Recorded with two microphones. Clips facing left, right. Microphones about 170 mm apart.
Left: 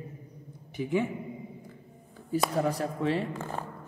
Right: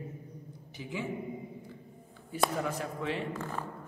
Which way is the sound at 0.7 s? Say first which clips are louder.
Left 10 dB; 55° left (ahead or behind).